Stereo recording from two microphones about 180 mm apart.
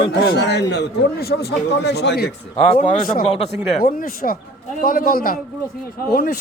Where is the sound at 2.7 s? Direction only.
55° left (ahead or behind).